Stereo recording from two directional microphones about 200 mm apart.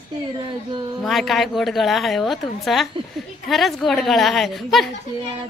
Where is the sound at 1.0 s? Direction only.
Centre (ahead or behind).